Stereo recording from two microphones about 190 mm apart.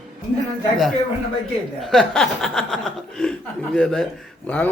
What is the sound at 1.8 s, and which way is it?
A man's voice, centre (ahead or behind).